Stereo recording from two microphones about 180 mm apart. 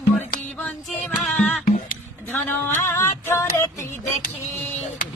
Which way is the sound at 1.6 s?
45° left (ahead or behind).